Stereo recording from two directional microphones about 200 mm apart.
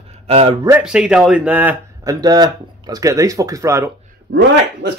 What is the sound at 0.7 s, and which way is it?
Speech, 5° right (ahead or behind).